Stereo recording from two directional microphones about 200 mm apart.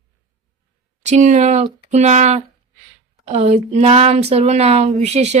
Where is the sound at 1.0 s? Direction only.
35° right (ahead or behind).